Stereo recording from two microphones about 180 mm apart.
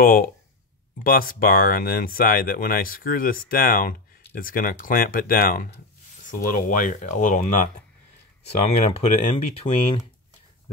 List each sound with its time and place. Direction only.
0.0 s speech: 55° left (ahead or behind); by 10.0 s 35° left (ahead or behind)